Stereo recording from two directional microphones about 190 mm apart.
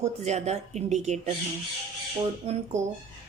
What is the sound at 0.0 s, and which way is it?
A woman's voice, 35° right (ahead or behind).